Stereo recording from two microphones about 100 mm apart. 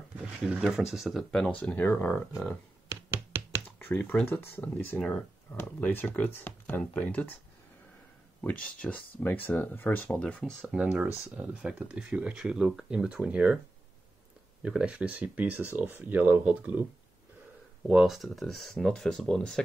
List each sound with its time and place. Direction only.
0.2 s speech: 10° right (ahead or behind)
1.6 s speech: 15° left (ahead or behind)
2.9 s hands: 20° right (ahead or behind)
3.6 s speech: 15° left (ahead or behind)
8.4 s speech: 10° left (ahead or behind)
10.7 s speech: 10° right (ahead or behind)
14.6 s speech: 10° right (ahead or behind)
17.8 s speech: 5° right (ahead or behind)